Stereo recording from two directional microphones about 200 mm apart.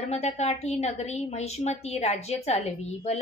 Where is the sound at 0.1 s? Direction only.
35° left (ahead or behind).